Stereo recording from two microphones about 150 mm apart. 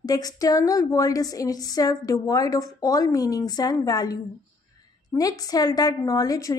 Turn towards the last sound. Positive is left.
turn(degrees=25)  # may be behind; listen again after turning